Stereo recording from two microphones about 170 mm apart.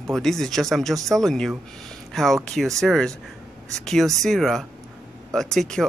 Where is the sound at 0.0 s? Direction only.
Centre (ahead or behind).